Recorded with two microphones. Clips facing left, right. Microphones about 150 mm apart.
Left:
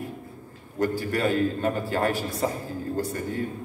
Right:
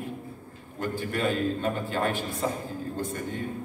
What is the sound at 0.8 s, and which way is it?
A man's voice, 35° left (ahead or behind).